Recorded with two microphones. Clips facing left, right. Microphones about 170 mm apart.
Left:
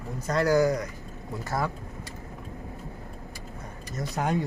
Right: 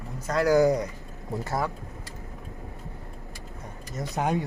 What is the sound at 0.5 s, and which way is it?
Speech, 25° right (ahead or behind).